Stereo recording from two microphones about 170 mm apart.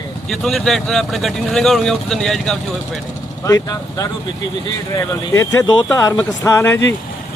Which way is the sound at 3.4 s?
20° left (ahead or behind).